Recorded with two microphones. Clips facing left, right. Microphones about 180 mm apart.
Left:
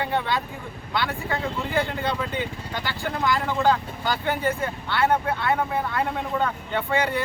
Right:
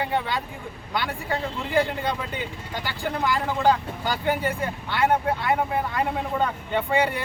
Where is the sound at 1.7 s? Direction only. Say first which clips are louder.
Right 3 dB; 10° right (ahead or behind).